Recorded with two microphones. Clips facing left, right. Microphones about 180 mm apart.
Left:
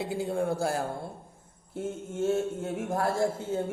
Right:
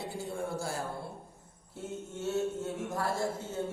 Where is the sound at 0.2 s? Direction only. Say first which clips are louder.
Left 7 dB; 60° left (ahead or behind).